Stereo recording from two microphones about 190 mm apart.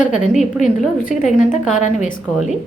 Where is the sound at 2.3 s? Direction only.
Centre (ahead or behind).